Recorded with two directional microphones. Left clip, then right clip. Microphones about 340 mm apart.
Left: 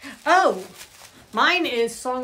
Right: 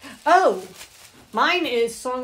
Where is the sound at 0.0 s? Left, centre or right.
Centre.